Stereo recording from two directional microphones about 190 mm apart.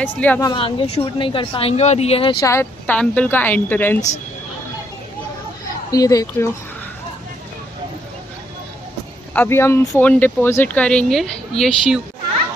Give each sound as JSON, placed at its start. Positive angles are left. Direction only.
{"t": 0.0, "sound": "speech", "side_deg": 10}
{"t": 0.5, "sound": "a woman's voice", "side_deg": 25}
{"t": 2.4, "sound": "speech", "side_deg": 10}
{"t": 5.9, "sound": "a woman's voice", "side_deg": 20}
{"t": 9.3, "sound": "speech", "side_deg": 10}